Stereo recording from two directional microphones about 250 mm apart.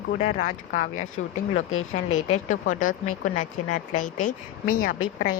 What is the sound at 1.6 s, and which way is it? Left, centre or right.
Speech, left.